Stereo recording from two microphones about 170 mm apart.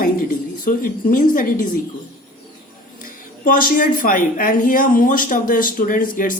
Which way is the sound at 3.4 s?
55° left (ahead or behind).